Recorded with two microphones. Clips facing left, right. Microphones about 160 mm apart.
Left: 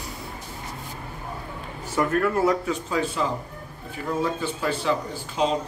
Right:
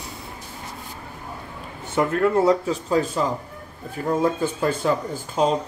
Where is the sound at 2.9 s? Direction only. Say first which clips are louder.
Right 5 dB; 40° right (ahead or behind).